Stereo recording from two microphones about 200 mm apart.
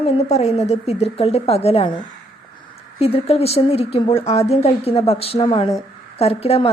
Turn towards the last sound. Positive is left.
turn(degrees=30)  # may be behind; listen again after turning